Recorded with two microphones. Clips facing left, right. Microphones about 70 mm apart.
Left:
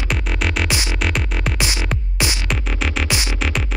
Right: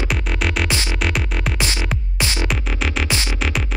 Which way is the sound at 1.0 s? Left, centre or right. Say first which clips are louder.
Even; centre.